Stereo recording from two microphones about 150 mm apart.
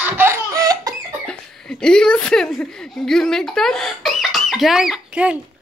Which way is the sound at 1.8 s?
5° left (ahead or behind).